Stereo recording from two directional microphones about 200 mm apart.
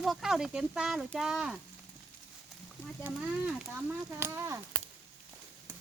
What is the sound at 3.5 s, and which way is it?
Speech, 5° right (ahead or behind).